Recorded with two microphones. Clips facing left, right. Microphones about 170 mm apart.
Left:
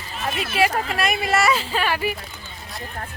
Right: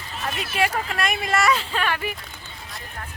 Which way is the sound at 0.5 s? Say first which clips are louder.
Left 3 dB; 5° left (ahead or behind).